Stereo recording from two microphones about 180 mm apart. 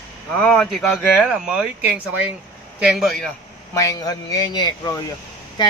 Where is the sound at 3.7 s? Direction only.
15° left (ahead or behind).